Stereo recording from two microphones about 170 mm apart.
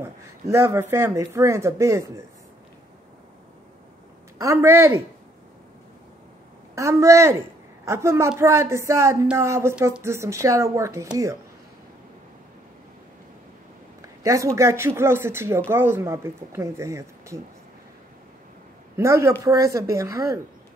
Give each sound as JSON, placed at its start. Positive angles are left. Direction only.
{"t": 0.5, "sound": "a woman's voice", "side_deg": -15}
{"t": 4.4, "sound": "a woman's voice", "side_deg": -15}
{"t": 6.7, "sound": "a woman's voice", "side_deg": -20}
{"t": 14.0, "sound": "a woman's voice", "side_deg": -20}
{"t": 18.9, "sound": "a woman's voice", "side_deg": -15}